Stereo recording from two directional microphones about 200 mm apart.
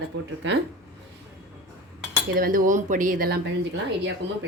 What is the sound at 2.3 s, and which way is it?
Speech, 45° right (ahead or behind).